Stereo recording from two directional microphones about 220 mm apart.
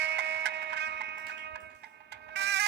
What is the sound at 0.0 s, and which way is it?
Music, 50° right (ahead or behind).